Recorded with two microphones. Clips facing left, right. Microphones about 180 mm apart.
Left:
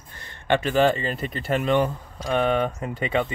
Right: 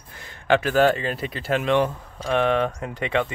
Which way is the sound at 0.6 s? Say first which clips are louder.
Left 1 dB; centre (ahead or behind).